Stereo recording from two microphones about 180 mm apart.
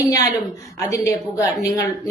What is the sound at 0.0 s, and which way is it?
A woman's voice, 20° left (ahead or behind).